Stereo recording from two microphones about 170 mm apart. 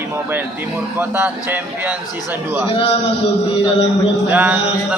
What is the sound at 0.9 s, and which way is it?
Speech, 10° right (ahead or behind).